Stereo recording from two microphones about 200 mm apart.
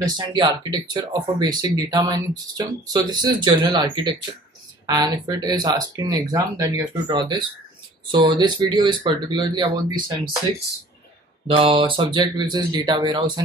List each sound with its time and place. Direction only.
0.0 s speech: 20° right (ahead or behind)
11.4 s speech: 25° right (ahead or behind)